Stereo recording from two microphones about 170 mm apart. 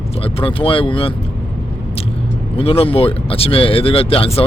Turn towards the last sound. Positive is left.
turn(degrees=35)  # may be behind; listen again after turning